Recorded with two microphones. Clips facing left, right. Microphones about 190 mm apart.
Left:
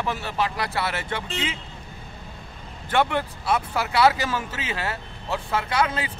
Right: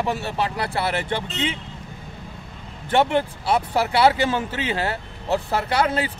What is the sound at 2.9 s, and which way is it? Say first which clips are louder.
Speech: right 4 dB; 30° right (ahead or behind).